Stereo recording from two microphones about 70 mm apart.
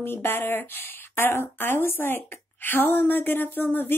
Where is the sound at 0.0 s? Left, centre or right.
Left.